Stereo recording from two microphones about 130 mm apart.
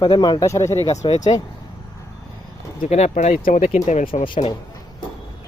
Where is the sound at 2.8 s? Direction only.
60° left (ahead or behind).